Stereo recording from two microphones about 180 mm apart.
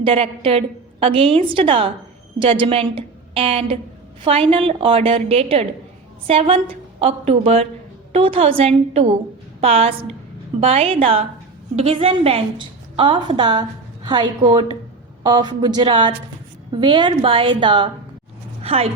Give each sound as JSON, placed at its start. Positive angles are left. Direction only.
{"t": 0.0, "sound": "a woman's voice", "side_deg": -30}